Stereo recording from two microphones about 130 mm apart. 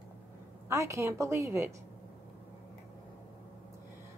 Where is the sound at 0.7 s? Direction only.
25° right (ahead or behind).